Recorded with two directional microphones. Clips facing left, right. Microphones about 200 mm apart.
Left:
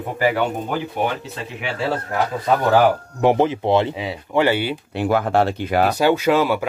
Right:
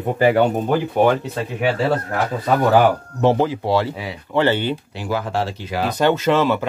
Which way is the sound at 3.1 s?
15° left (ahead or behind).